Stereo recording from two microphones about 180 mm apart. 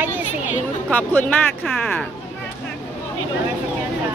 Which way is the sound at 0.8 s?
10° left (ahead or behind).